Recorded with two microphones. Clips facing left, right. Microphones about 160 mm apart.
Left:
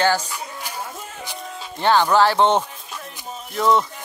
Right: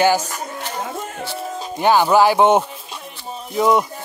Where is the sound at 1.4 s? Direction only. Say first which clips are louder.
Right 6 dB; 40° right (ahead or behind).